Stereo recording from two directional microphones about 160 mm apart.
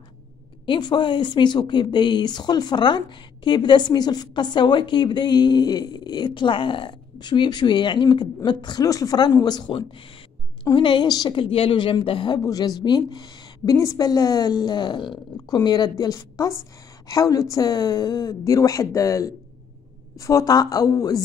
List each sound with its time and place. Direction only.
0.7 s speech: 30° left (ahead or behind)